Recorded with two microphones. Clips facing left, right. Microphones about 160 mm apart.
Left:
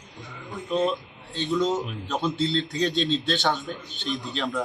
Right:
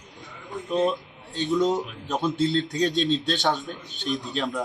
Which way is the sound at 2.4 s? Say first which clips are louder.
Right 3 dB; 45° right (ahead or behind).